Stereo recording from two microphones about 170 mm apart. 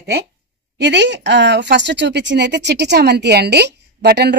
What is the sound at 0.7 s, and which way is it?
A woman's voice, 90° right.